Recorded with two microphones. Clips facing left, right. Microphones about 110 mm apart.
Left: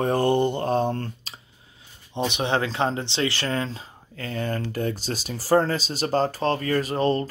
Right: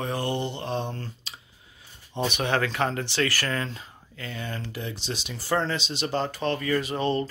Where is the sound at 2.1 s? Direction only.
20° left (ahead or behind).